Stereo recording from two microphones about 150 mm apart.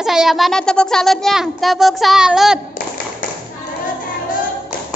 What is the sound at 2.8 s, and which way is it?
Tap, 60° left (ahead or behind).